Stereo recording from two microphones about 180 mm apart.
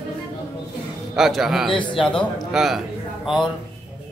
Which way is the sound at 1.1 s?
Centre (ahead or behind).